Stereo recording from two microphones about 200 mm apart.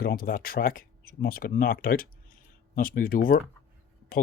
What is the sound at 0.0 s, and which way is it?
Speech, 50° left (ahead or behind).